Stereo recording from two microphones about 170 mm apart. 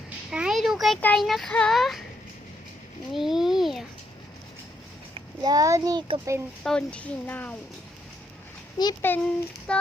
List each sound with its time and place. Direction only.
0.3 s a sound: 5° right (ahead or behind)
1.0 s child singing: centre (ahead or behind)
3.1 s a child's voice: centre (ahead or behind)
5.1 s a child's voice: 25° right (ahead or behind)
6.6 s speech: 5° left (ahead or behind)
9.0 s speech: 10° left (ahead or behind)
9.7 s child singing: 5° left (ahead or behind)